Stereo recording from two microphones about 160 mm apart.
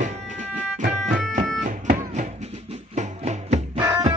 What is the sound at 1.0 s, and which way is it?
Music, 5° left (ahead or behind).